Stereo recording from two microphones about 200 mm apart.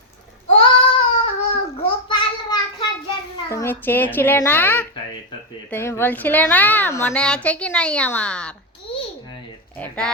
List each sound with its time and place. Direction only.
0.5 s child singing: 30° left (ahead or behind)
3.5 s a woman's voice: 10° left (ahead or behind)
9.7 s a sound: 5° left (ahead or behind)